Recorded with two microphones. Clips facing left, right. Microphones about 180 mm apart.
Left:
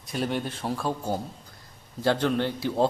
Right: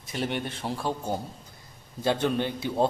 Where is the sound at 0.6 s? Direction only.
Centre (ahead or behind).